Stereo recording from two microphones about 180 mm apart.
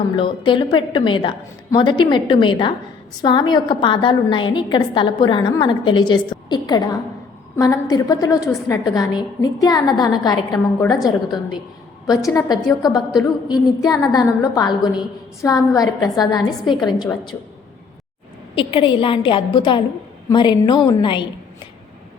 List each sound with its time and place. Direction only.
0.2 s a woman's voice: 30° left (ahead or behind)
18.5 s a woman's voice: 30° left (ahead or behind)